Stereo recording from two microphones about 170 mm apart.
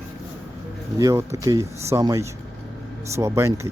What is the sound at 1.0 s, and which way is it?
Speech, 15° right (ahead or behind).